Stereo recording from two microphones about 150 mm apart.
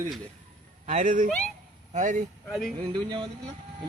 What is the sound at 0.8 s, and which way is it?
Speech, 55° right (ahead or behind).